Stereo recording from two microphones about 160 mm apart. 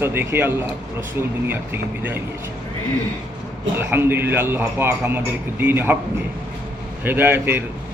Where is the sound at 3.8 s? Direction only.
15° right (ahead or behind).